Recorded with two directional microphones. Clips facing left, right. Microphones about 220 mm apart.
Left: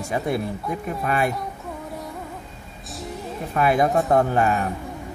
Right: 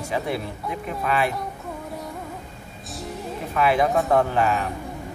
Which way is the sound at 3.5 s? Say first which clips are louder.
Left 1 dB; 45° left (ahead or behind).